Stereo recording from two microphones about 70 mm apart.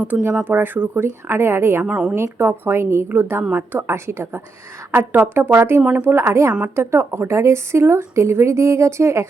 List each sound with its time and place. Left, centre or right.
0.1 s a woman's voice: right
1.8 s a woman's voice: centre
2.1 s a woman's voice: right